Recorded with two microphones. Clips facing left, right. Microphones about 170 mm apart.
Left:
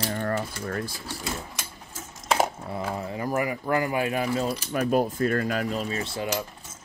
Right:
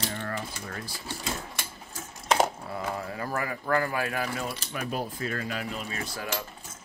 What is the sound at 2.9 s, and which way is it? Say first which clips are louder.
Speech: left 4 dB; 20° left (ahead or behind).